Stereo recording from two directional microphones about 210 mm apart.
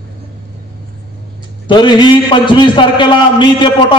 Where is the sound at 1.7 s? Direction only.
20° left (ahead or behind).